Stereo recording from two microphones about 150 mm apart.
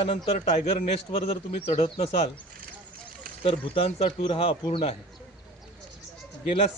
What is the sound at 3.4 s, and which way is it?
Speech, 40° left (ahead or behind).